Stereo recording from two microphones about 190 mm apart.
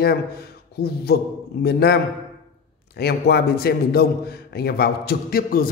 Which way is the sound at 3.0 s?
55° left (ahead or behind).